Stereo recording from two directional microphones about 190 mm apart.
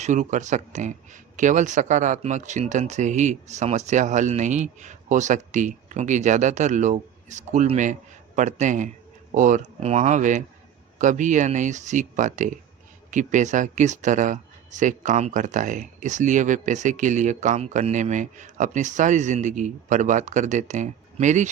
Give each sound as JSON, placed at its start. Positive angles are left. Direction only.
{"t": 0.0, "sound": "speech", "side_deg": -40}